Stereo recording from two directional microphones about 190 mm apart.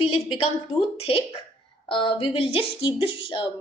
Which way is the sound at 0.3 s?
30° left (ahead or behind).